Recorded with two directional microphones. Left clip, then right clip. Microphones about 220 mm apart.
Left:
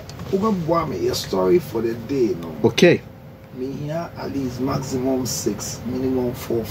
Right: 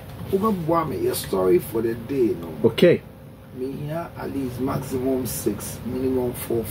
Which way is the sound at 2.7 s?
45° left (ahead or behind).